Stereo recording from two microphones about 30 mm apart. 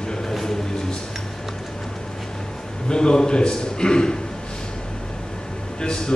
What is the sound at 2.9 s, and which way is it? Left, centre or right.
Speech, left.